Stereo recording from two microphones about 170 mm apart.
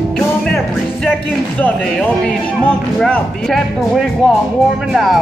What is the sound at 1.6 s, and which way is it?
Speech, 5° left (ahead or behind).